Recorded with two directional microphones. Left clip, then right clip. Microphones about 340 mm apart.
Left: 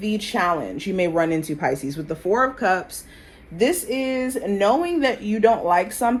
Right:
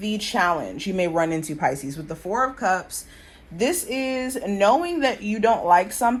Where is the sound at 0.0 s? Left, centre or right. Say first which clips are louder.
Even; right; by 2.8 s centre.